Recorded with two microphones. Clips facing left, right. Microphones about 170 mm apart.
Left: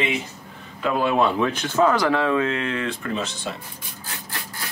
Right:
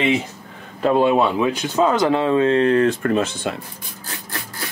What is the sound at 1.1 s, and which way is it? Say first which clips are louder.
Speech: right 2 dB; 15° right (ahead or behind).